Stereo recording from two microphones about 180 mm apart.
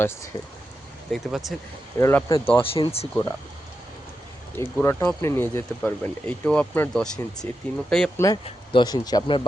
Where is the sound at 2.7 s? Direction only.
35° left (ahead or behind).